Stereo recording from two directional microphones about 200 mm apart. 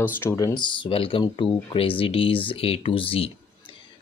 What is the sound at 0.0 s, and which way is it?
Speech, 10° left (ahead or behind).